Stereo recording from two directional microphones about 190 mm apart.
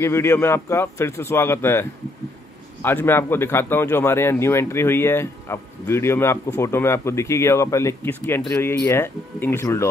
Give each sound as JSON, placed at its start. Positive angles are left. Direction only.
{"t": 0.0, "sound": "speech", "side_deg": 15}